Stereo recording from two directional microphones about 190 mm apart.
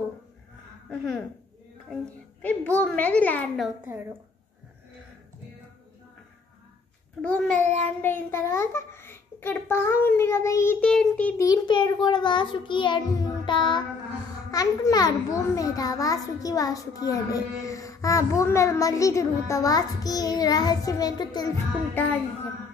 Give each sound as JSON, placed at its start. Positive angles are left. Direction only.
{"t": 0.8, "sound": "a child's voice", "side_deg": 5}
{"t": 2.4, "sound": "a child's voice", "side_deg": 10}
{"t": 3.8, "sound": "a woman's voice", "side_deg": -10}
{"t": 7.2, "sound": "a child's voice", "side_deg": 5}
{"t": 11.4, "sound": "a child's voice", "side_deg": 20}